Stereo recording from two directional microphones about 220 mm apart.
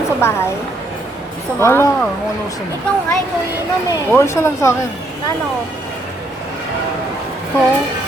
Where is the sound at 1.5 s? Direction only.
10° left (ahead or behind).